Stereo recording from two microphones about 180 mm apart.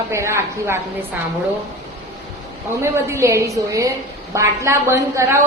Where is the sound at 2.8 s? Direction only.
15° right (ahead or behind).